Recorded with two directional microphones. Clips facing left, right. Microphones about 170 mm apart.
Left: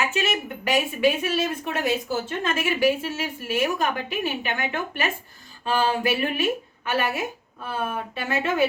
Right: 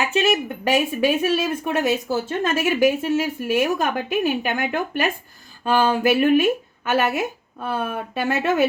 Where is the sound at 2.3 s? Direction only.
45° right (ahead or behind).